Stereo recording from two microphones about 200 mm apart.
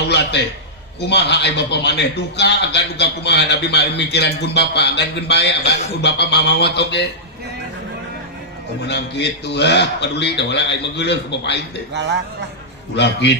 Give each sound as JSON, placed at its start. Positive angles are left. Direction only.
{"t": 0.1, "sound": "a man's voice", "side_deg": 55}
{"t": 8.9, "sound": "a man's voice", "side_deg": 60}
{"t": 11.9, "sound": "a man's voice", "side_deg": -60}
{"t": 13.0, "sound": "a man's voice", "side_deg": 60}